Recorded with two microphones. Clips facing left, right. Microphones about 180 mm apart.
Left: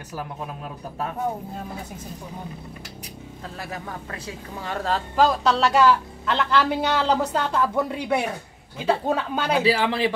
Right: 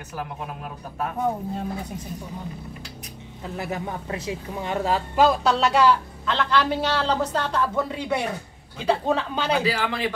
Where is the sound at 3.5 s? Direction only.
25° right (ahead or behind); by 5.6 s 5° right (ahead or behind).